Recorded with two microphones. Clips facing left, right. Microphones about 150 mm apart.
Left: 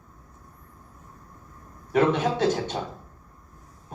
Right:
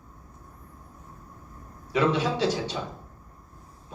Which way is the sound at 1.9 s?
50° left (ahead or behind).